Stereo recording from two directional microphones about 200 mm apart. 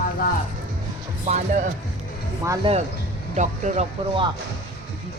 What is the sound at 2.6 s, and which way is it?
Speech, 25° right (ahead or behind).